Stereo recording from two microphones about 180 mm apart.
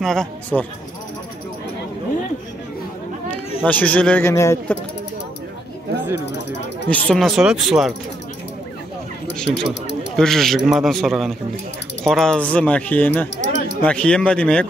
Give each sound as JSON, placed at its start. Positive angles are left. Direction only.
{"t": 0.0, "sound": "a man's voice", "side_deg": 5}
{"t": 3.6, "sound": "speech", "side_deg": 10}
{"t": 6.9, "sound": "a man's voice", "side_deg": 5}
{"t": 9.3, "sound": "a man's voice", "side_deg": 5}
{"t": 13.4, "sound": "a sound", "side_deg": 75}
{"t": 13.8, "sound": "a man's voice", "side_deg": 5}